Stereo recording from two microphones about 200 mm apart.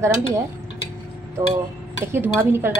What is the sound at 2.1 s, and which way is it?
Speech, 10° right (ahead or behind).